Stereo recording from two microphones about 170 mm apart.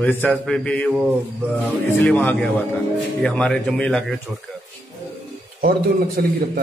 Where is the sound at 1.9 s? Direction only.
10° left (ahead or behind).